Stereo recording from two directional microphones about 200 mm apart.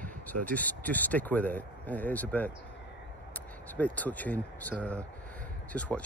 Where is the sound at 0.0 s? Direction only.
10° left (ahead or behind).